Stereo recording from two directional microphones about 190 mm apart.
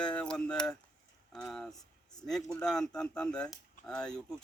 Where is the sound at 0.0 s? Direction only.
5° left (ahead or behind).